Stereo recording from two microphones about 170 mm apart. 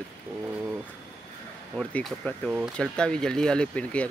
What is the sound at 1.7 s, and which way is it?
Speech, 5° left (ahead or behind).